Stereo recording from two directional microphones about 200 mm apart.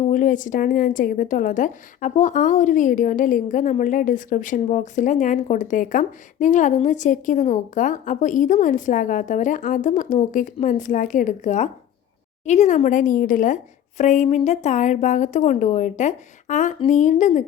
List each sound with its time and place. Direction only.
0.1 s a woman's voice: 40° left (ahead or behind)